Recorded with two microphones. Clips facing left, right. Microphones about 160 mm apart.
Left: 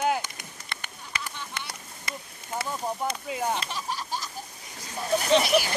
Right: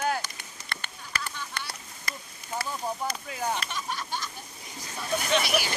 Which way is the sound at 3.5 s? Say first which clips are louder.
Left 1 dB; 35° left (ahead or behind).